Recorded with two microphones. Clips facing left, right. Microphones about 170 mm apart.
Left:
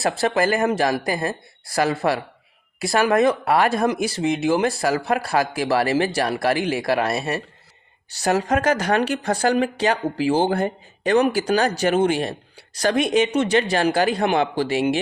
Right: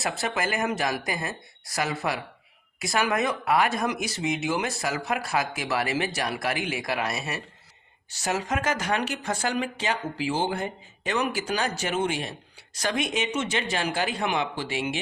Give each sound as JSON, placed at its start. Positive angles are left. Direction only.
{"t": 0.0, "sound": "speech", "side_deg": 35}
{"t": 8.2, "sound": "speech", "side_deg": 60}
{"t": 8.6, "sound": "speech", "side_deg": 35}